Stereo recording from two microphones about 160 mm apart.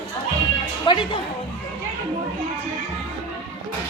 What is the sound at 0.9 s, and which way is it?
Speech, 30° left (ahead or behind).